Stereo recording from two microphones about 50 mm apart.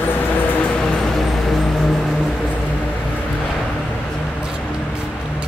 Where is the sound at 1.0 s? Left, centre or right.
Centre.